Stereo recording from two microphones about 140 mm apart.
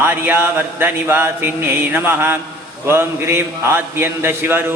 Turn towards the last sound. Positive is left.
turn(degrees=-15)  # may be behind; listen again after turning